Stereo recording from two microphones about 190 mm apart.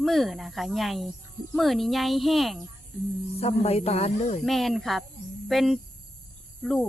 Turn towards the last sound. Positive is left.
turn(degrees=0)  # may be behind; listen again after turning